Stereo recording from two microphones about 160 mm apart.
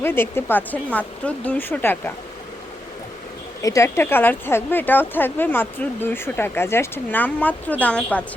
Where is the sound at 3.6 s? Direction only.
20° left (ahead or behind).